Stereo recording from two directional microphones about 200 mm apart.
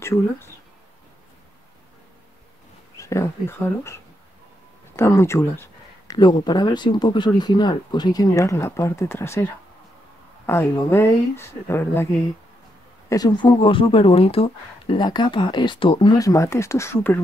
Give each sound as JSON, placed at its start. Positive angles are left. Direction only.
{"t": 0.0, "sound": "speech", "side_deg": 15}
{"t": 3.0, "sound": "speech", "side_deg": 15}
{"t": 13.1, "sound": "speech", "side_deg": 20}